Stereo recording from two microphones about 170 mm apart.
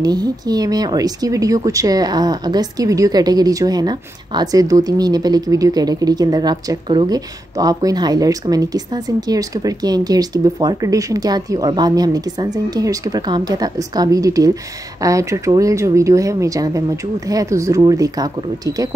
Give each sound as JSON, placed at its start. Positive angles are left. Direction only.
{"t": 0.0, "sound": "speech", "side_deg": -25}